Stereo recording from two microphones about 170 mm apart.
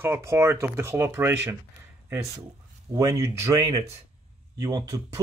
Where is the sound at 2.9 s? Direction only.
20° right (ahead or behind).